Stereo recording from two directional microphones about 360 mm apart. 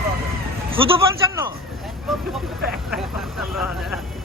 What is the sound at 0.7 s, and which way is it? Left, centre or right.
Speech, centre.